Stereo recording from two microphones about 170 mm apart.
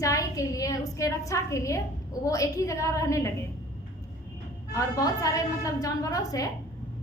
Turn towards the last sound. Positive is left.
turn(degrees=20)  # may be behind; listen again after turning